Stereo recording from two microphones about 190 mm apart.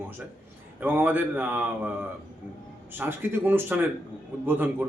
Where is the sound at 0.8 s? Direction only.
10° right (ahead or behind).